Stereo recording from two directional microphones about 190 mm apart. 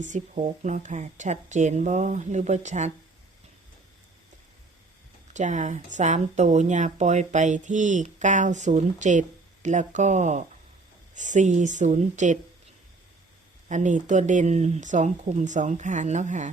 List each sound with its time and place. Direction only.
0.0 s speech: 40° right (ahead or behind)
5.3 s speech: 40° right (ahead or behind)
13.7 s speech: 40° right (ahead or behind)